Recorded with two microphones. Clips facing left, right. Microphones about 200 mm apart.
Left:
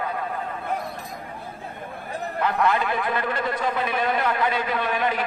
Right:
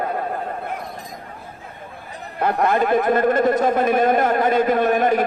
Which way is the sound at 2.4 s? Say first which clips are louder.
Right 4 dB; 45° right (ahead or behind).